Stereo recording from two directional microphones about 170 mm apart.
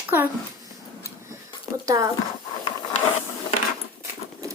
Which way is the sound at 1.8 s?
20° right (ahead or behind).